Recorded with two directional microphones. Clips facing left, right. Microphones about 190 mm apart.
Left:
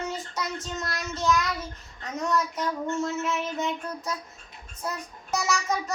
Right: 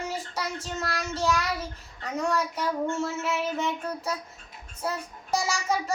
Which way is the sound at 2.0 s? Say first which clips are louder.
Even; 30° right (ahead or behind).